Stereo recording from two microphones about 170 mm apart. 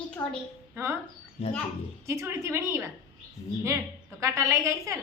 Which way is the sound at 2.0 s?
15° right (ahead or behind).